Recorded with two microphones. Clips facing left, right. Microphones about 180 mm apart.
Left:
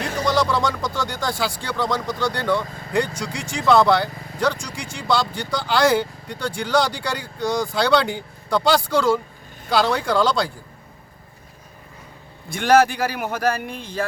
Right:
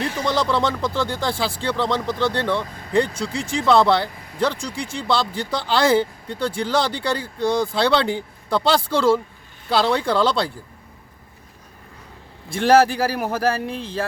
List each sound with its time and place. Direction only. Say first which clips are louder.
0.9 s speech: right 2 dB; 30° right (ahead or behind)
12.5 s speech: right 1 dB; 30° right (ahead or behind)